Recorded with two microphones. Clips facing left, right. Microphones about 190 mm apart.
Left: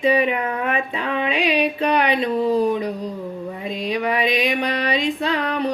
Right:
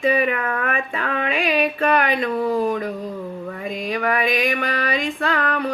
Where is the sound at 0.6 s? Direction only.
20° left (ahead or behind).